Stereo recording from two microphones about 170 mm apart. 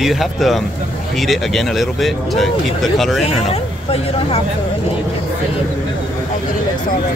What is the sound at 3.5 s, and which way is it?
Speech, 35° left (ahead or behind).